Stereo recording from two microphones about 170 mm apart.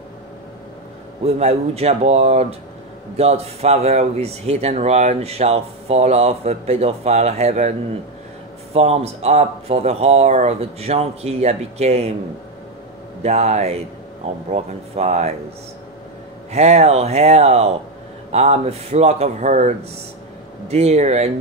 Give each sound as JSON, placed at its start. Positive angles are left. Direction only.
{"t": 1.2, "sound": "speech", "side_deg": -40}
{"t": 8.7, "sound": "speech", "side_deg": -40}
{"t": 13.2, "sound": "speech", "side_deg": -40}
{"t": 16.5, "sound": "speech", "side_deg": -40}